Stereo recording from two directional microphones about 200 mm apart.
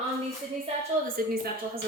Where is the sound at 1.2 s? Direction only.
45° right (ahead or behind).